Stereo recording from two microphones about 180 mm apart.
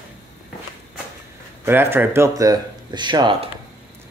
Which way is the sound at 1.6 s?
10° right (ahead or behind).